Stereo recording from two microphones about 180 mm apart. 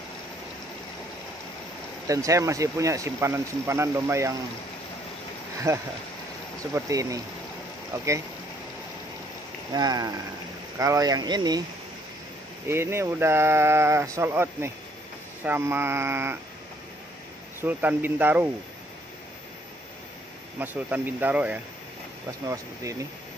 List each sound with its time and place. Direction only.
2.0 s speech: 20° right (ahead or behind)
5.7 s speech: 15° right (ahead or behind)
9.7 s speech: 20° right (ahead or behind)
12.6 s speech: 15° right (ahead or behind)
17.6 s speech: 10° right (ahead or behind)
20.5 s speech: 10° right (ahead or behind)